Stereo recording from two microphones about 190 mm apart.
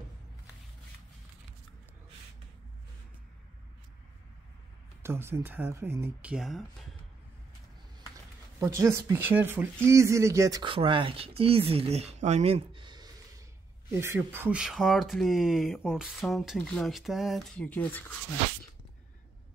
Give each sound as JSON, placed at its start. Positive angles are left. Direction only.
{"t": 5.0, "sound": "speech", "side_deg": -15}
{"t": 8.5, "sound": "speech", "side_deg": -15}
{"t": 13.8, "sound": "speech", "side_deg": -10}